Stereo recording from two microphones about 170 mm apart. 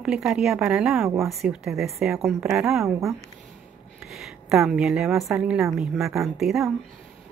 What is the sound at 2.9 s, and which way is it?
Speech, 15° right (ahead or behind).